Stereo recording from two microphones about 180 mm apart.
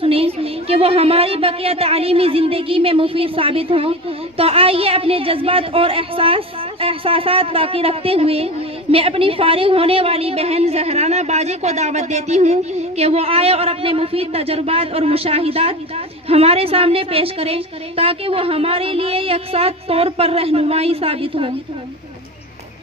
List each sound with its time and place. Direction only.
0.0 s a woman's voice: 30° right (ahead or behind)